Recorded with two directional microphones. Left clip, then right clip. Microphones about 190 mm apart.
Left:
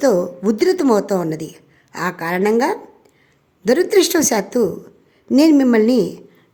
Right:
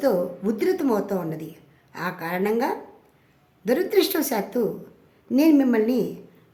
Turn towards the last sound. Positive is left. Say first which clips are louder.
# left 7 dB
turn(degrees=40)  # may be behind; listen again after turning